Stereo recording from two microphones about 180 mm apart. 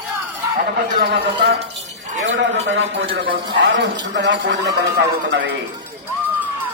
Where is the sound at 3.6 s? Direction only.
70° right (ahead or behind).